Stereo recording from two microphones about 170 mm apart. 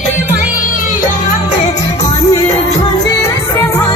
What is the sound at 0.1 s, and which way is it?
Music, 10° right (ahead or behind).